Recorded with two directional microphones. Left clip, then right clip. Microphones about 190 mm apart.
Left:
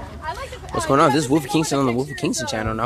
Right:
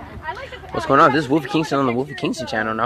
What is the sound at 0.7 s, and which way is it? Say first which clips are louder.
Speech: right 2 dB; 5° left (ahead or behind).